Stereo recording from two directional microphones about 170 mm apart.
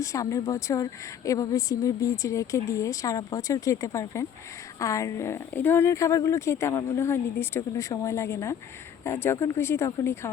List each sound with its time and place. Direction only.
0.0 s a woman's voice: 20° left (ahead or behind)